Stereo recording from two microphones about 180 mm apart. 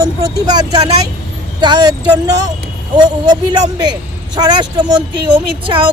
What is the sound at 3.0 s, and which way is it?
Speech, 25° right (ahead or behind).